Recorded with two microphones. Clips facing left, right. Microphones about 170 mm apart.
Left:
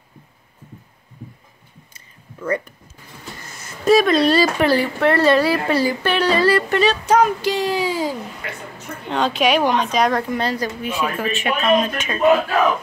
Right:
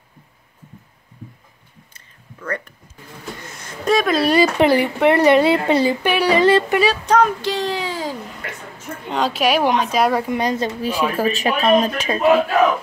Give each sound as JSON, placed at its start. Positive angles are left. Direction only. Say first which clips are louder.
{"t": 2.0, "sound": "a sound", "louder": "left 5 dB", "side_deg": 10}
{"t": 4.3, "sound": "speech", "louder": "right 2 dB", "side_deg": -20}
{"t": 7.1, "sound": "speech", "louder": "left 1 dB", "side_deg": 10}
{"t": 9.1, "sound": "a woman's voice", "louder": "even", "side_deg": -5}
{"t": 10.3, "sound": "speech", "louder": "right 2 dB", "side_deg": -20}